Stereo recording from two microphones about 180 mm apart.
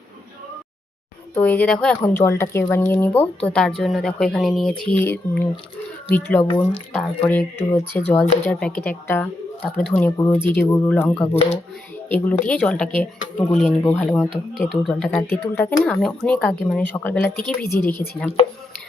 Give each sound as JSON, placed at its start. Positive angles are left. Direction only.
{"t": 1.4, "sound": "speech", "side_deg": 10}
{"t": 6.1, "sound": "speech", "side_deg": 10}
{"t": 6.4, "sound": "speech", "side_deg": 25}
{"t": 6.9, "sound": "speech", "side_deg": 10}
{"t": 11.3, "sound": "speech", "side_deg": 35}
{"t": 12.0, "sound": "speech", "side_deg": 10}